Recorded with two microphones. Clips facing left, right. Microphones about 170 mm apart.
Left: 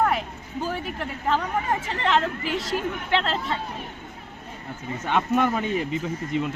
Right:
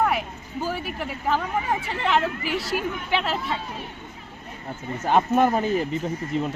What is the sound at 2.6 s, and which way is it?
Speech, 20° left (ahead or behind).